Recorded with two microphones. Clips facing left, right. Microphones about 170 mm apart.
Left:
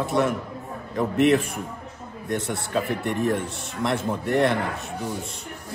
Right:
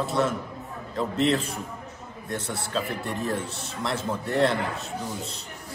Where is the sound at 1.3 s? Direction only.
20° left (ahead or behind).